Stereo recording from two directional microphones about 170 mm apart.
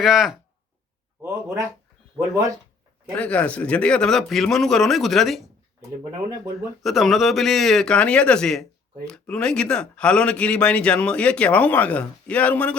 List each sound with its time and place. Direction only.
0.0 s speech: 5° right (ahead or behind)
1.2 s speech: 15° right (ahead or behind)
3.2 s speech: 5° left (ahead or behind)
6.0 s speech: 20° right (ahead or behind)
6.8 s a man's voice: centre (ahead or behind)